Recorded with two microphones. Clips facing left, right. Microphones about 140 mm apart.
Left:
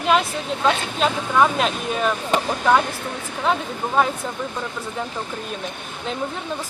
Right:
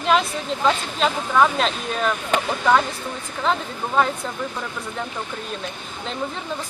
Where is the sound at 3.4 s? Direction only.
5° left (ahead or behind).